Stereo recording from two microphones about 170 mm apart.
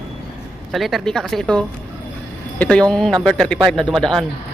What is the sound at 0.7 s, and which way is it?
Speech, centre (ahead or behind).